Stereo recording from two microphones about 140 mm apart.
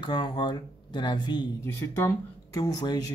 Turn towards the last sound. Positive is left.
turn(degrees=30)  # may be behind; listen again after turning